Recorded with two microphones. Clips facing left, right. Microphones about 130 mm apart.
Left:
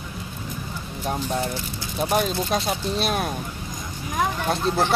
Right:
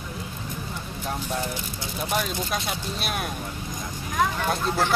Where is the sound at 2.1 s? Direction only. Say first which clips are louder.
Left 5 dB; 30° left (ahead or behind).